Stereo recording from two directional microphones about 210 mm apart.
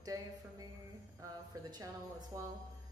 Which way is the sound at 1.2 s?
20° right (ahead or behind).